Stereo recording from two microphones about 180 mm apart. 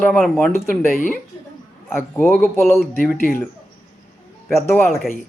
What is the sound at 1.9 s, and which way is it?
Speech, 10° left (ahead or behind).